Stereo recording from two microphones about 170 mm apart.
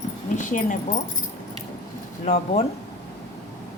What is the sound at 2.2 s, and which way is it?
Speech, 40° left (ahead or behind).